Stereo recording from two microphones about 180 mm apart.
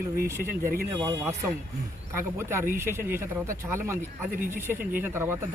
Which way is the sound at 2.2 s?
15° right (ahead or behind).